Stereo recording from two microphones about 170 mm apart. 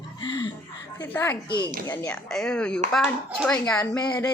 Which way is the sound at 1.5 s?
25° left (ahead or behind).